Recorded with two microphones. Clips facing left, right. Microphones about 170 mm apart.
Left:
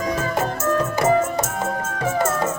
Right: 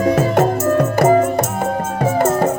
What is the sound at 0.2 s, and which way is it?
Music, 70° right (ahead or behind).